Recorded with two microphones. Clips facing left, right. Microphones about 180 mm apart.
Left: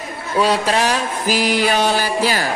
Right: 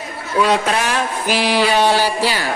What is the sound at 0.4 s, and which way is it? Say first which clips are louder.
A man's voice: even; 35° left (ahead or behind).